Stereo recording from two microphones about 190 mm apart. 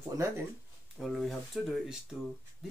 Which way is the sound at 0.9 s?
Centre (ahead or behind).